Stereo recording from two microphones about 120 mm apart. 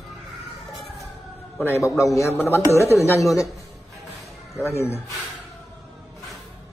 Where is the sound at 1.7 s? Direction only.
25° left (ahead or behind).